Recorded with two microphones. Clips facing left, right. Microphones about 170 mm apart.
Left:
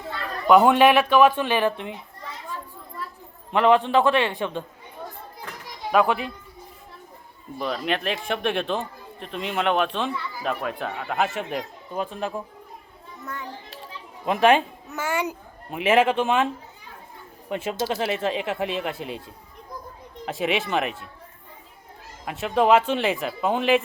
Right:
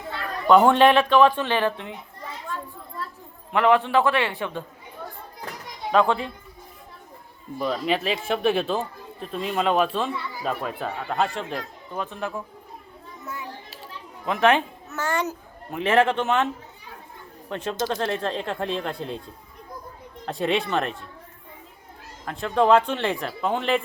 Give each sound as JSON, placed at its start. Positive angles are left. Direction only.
{"t": 0.4, "sound": "speech", "side_deg": 10}
{"t": 3.5, "sound": "a man's voice", "side_deg": 20}
{"t": 5.9, "sound": "speech", "side_deg": 10}
{"t": 7.6, "sound": "speech", "side_deg": -5}
{"t": 11.3, "sound": "speech", "side_deg": 10}
{"t": 13.2, "sound": "children playing", "side_deg": -5}
{"t": 14.3, "sound": "a man's voice", "side_deg": 15}
{"t": 17.5, "sound": "speech", "side_deg": 10}
{"t": 20.2, "sound": "speech", "side_deg": 5}
{"t": 22.3, "sound": "speech", "side_deg": 10}